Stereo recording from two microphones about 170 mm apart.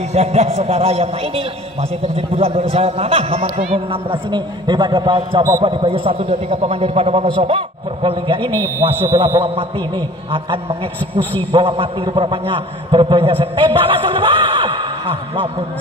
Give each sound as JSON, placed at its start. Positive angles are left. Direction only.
{"t": 0.1, "sound": "a man's voice", "side_deg": -40}
{"t": 8.5, "sound": "a man's voice", "side_deg": 15}
{"t": 8.8, "sound": "a man's voice", "side_deg": -25}